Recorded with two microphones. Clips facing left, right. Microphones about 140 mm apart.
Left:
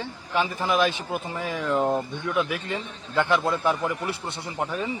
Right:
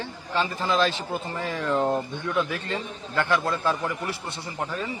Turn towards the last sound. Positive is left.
turn(degrees=15)  # may be behind; listen again after turning